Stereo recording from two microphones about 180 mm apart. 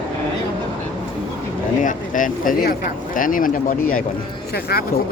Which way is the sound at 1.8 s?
45° left (ahead or behind).